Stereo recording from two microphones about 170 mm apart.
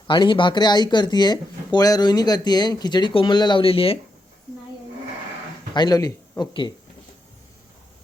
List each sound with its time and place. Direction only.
0.1 s speech: 30° left (ahead or behind)
5.7 s a man's voice: 25° left (ahead or behind)